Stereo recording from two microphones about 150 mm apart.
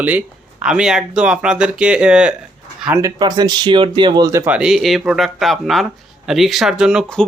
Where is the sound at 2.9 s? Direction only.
25° right (ahead or behind).